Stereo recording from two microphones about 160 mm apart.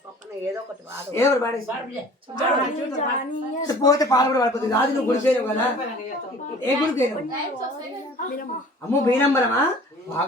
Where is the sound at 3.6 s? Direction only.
20° left (ahead or behind).